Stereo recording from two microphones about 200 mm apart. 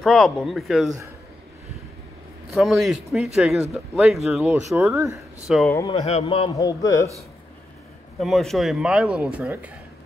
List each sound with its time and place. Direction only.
0.0 s speech: centre (ahead or behind)
2.5 s speech: centre (ahead or behind)
5.7 s a man's voice: 15° left (ahead or behind)
5.9 s a man's voice: 30° left (ahead or behind); by 7.1 s 15° left (ahead or behind)
8.2 s speech: centre (ahead or behind)